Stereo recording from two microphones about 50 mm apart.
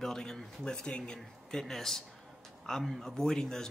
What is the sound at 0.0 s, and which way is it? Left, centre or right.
Speech, centre.